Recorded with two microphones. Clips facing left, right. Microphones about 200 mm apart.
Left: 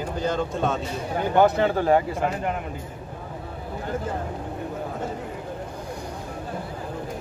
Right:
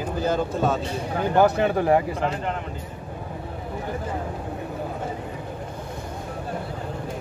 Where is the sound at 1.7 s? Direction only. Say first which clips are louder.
Even; 20° right (ahead or behind).